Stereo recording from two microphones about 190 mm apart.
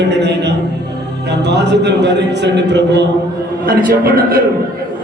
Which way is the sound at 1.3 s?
65° right (ahead or behind).